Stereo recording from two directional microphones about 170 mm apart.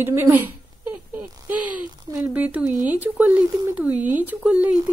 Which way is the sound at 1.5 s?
10° right (ahead or behind).